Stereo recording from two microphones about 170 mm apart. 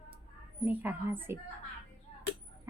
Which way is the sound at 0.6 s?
10° right (ahead or behind).